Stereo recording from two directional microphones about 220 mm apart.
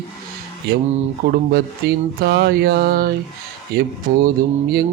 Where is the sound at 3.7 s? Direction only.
40° right (ahead or behind).